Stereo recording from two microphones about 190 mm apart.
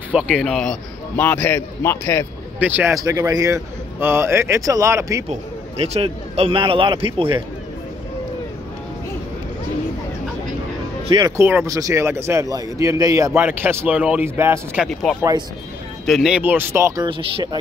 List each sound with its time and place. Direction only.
0.1 s a man's voice: 5° right (ahead or behind); by 2.2 s 15° left (ahead or behind)
2.6 s speech: 10° right (ahead or behind)
5.3 s a man's voice: 30° right (ahead or behind)
11.1 s speech: 20° right (ahead or behind)
14.9 s speech: centre (ahead or behind); by 17.6 s 25° right (ahead or behind)